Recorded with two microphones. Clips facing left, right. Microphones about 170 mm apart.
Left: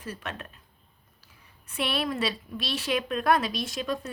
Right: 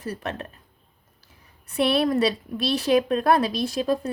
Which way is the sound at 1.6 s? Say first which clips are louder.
Right 8 dB; 35° right (ahead or behind).